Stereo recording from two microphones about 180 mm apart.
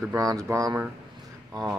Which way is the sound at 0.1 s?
20° right (ahead or behind).